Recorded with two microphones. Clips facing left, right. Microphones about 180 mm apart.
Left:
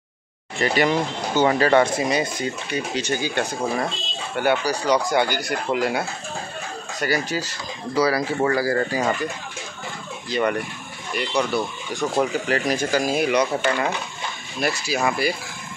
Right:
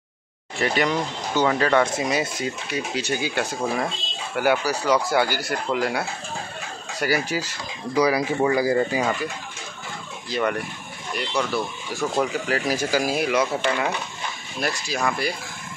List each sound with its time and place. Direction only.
0.6 s speech: centre (ahead or behind)
7.0 s speech: 10° right (ahead or behind)
10.3 s speech: centre (ahead or behind)